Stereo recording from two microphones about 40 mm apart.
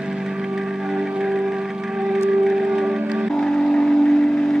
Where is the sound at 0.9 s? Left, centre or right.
Centre.